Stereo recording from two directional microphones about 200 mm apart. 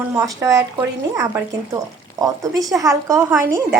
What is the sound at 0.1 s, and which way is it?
Speech, 15° right (ahead or behind).